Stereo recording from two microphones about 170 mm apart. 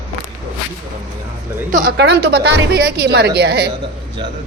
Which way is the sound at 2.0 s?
75° right (ahead or behind).